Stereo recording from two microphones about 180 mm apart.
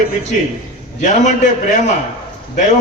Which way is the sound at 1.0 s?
40° left (ahead or behind).